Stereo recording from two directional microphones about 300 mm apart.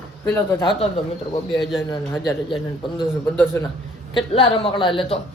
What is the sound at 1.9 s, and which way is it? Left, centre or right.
Speech, centre.